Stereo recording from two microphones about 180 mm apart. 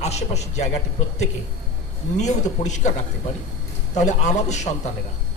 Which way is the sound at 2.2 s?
40° left (ahead or behind).